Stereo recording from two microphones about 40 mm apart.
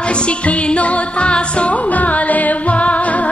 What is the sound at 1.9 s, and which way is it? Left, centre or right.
Music, left.